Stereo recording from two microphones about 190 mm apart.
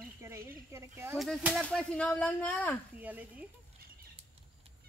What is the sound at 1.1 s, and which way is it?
Speech, centre (ahead or behind).